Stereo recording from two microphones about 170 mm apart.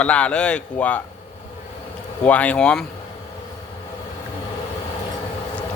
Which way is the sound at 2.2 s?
10° left (ahead or behind).